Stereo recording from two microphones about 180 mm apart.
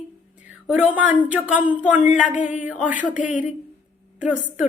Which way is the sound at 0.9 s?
10° right (ahead or behind).